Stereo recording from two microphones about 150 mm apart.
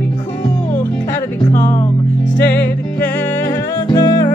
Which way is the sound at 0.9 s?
15° left (ahead or behind).